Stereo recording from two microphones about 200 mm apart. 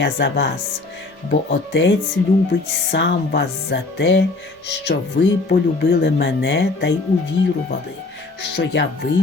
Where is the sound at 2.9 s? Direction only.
65° left (ahead or behind).